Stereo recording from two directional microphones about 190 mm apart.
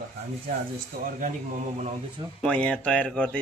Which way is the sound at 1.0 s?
45° right (ahead or behind).